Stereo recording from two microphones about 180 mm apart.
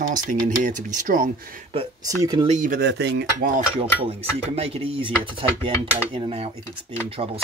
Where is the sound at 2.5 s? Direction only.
45° right (ahead or behind).